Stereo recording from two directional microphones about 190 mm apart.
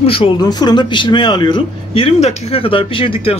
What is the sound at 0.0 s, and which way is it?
A man's voice, 30° left (ahead or behind).